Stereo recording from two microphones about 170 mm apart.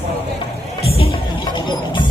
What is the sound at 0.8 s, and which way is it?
Music, 35° left (ahead or behind).